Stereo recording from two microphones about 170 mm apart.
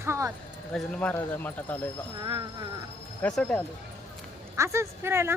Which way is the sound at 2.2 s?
25° right (ahead or behind).